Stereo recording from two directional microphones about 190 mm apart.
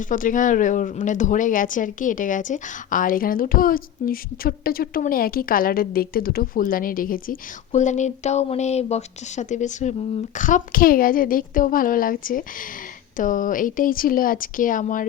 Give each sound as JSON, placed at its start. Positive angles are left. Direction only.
{"t": 0.0, "sound": "speech", "side_deg": 45}